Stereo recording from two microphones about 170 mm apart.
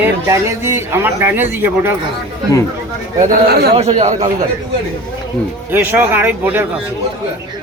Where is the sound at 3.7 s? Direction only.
40° right (ahead or behind).